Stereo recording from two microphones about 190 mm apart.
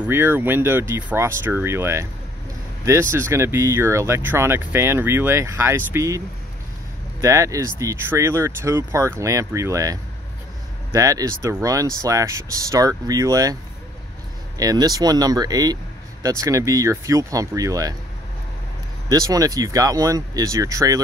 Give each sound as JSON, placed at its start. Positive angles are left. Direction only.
{"t": 0.0, "sound": "speech", "side_deg": -10}
{"t": 14.6, "sound": "speech", "side_deg": -20}
{"t": 19.0, "sound": "speech", "side_deg": -15}